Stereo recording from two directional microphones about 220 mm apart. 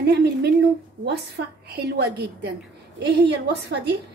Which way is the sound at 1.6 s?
45° right (ahead or behind).